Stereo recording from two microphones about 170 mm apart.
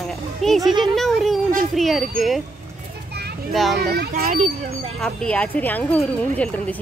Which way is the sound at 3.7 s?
70° right (ahead or behind).